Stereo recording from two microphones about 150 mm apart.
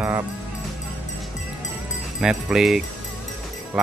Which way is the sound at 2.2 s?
5° right (ahead or behind).